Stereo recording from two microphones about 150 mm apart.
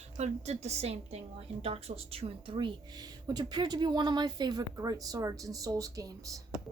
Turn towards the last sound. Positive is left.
turn(degrees=-25)  # may be behind; listen again after turning